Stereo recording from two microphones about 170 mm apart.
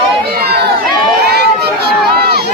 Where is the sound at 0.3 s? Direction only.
65° right (ahead or behind).